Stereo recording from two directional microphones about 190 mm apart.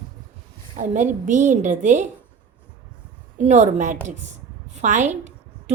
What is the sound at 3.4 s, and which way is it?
A woman's voice, 40° right (ahead or behind).